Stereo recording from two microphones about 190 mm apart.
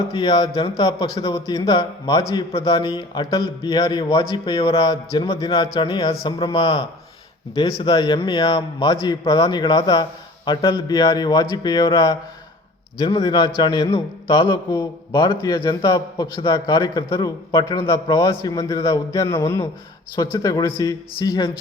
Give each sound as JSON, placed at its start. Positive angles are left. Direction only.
{"t": 0.2, "sound": "a man's voice", "side_deg": 20}